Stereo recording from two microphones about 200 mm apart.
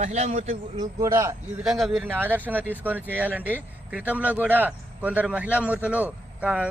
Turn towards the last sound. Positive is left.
turn(degrees=-5)  # may be behind; listen again after turning